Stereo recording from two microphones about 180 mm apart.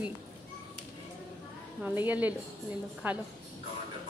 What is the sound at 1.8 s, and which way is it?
A woman's voice, 10° right (ahead or behind).